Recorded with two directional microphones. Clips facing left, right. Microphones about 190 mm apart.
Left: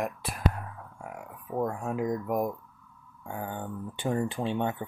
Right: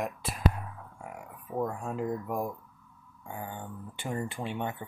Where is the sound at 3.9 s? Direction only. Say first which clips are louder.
Left 5 dB; 20° left (ahead or behind).